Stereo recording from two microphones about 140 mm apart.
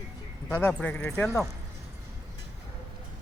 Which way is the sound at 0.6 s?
10° left (ahead or behind).